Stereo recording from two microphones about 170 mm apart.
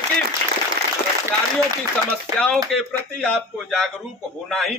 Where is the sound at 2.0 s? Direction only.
5° left (ahead or behind).